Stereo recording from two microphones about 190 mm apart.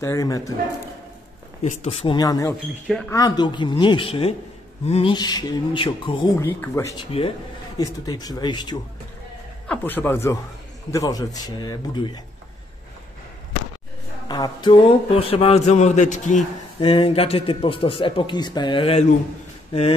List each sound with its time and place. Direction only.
0.0 s speech: 15° left (ahead or behind)
1.6 s a man's voice: 35° left (ahead or behind)
6.4 s speech: 15° left (ahead or behind)
7.1 s a man's voice: 30° left (ahead or behind)
9.7 s a man's voice: 10° left (ahead or behind)
14.2 s a man's voice: 25° left (ahead or behind)